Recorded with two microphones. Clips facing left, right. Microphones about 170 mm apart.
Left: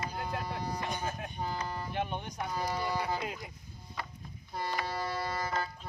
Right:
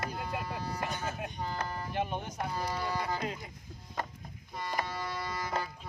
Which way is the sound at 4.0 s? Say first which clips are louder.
Right 4 dB; 45° right (ahead or behind).